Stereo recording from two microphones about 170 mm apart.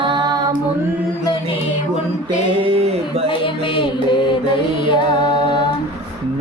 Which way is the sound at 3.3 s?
30° left (ahead or behind).